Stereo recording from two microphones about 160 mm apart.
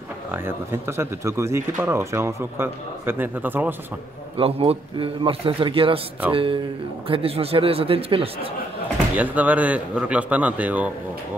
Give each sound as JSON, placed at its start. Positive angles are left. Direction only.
{"t": 0.3, "sound": "speech", "side_deg": -15}
{"t": 4.4, "sound": "a man's voice", "side_deg": -35}
{"t": 9.1, "sound": "speech", "side_deg": -10}